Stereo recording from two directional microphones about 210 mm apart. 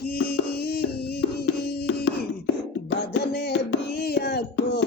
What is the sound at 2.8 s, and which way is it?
Music, 50° left (ahead or behind).